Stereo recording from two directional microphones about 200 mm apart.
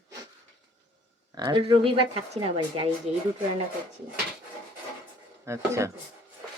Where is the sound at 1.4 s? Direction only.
20° right (ahead or behind).